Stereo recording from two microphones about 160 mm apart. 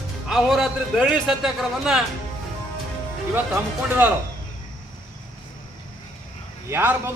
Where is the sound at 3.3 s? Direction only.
10° right (ahead or behind).